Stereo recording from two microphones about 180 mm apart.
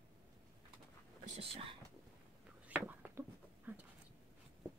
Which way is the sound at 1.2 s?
35° right (ahead or behind).